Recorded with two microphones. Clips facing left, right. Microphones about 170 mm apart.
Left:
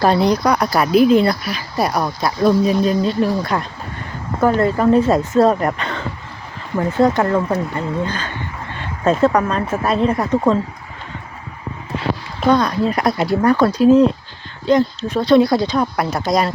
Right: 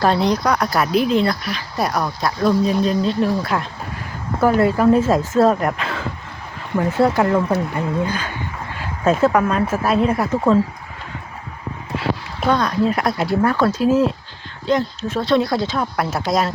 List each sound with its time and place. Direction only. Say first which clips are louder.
0.0 s speech: left 2 dB; 5° left (ahead or behind)
12.5 s speech: left 1 dB; centre (ahead or behind)